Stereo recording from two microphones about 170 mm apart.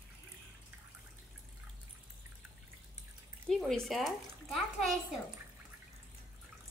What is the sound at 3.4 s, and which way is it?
Speech, centre (ahead or behind).